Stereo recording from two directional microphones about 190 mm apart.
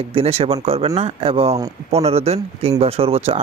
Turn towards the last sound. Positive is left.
turn(degrees=-30)  # may be behind; listen again after turning